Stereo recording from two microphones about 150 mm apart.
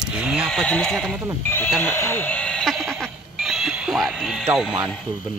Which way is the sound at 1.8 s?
15° left (ahead or behind).